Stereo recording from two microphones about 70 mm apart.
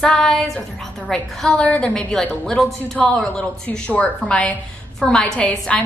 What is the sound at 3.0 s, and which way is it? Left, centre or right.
A woman's voice, centre.